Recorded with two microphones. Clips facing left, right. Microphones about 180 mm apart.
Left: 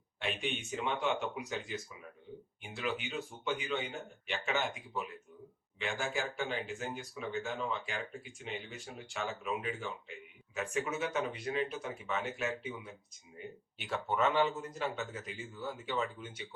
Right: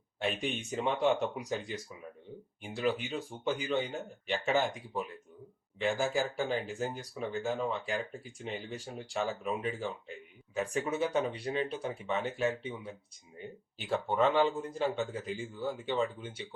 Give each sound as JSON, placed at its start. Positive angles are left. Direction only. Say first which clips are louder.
{"t": 0.2, "sound": "speech", "louder": "right 4 dB", "side_deg": -35}